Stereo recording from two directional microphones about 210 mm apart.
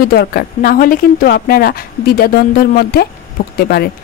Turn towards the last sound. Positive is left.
turn(degrees=45)  # may be behind; listen again after turning